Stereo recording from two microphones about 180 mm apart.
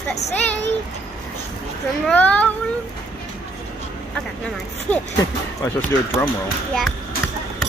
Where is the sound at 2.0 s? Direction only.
10° left (ahead or behind).